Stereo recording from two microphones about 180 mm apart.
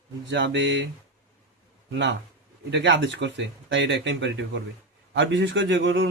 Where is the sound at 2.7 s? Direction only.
90° right.